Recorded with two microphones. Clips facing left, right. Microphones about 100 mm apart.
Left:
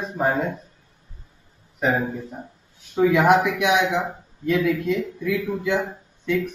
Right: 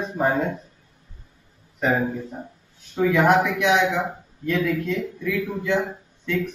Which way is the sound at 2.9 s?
15° left (ahead or behind).